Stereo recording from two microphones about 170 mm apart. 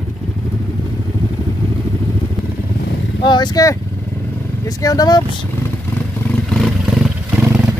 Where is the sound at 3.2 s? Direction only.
25° left (ahead or behind).